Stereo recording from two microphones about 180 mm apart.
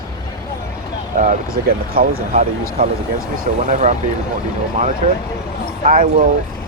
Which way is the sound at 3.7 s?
40° right (ahead or behind).